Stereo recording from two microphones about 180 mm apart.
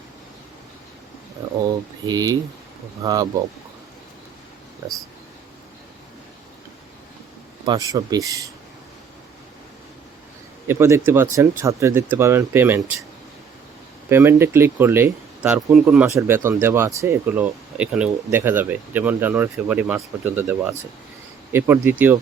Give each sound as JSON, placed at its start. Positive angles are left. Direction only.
{"t": 2.0, "sound": "speech", "side_deg": -20}
{"t": 7.6, "sound": "speech", "side_deg": -20}
{"t": 10.7, "sound": "speech", "side_deg": -15}
{"t": 14.1, "sound": "speech", "side_deg": -15}